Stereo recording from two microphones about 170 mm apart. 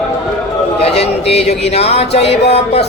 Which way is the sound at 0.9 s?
35° left (ahead or behind).